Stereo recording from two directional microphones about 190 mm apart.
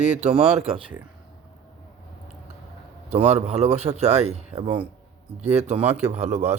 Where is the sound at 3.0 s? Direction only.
35° right (ahead or behind).